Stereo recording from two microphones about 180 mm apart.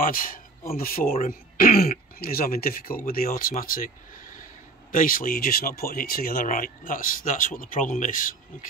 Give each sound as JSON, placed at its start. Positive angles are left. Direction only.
{"t": 0.0, "sound": "speech", "side_deg": 50}